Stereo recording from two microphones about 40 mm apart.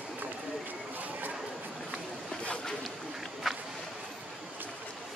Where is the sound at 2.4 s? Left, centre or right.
Left.